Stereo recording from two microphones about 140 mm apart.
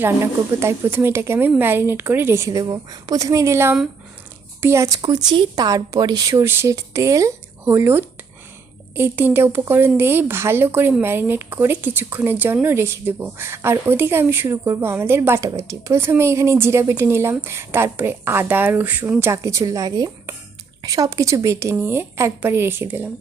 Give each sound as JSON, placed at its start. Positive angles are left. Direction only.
{"t": 0.0, "sound": "speech", "side_deg": -20}
{"t": 4.9, "sound": "speech", "side_deg": -30}